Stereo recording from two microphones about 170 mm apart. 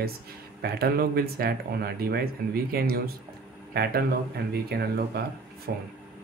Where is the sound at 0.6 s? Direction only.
65° right (ahead or behind).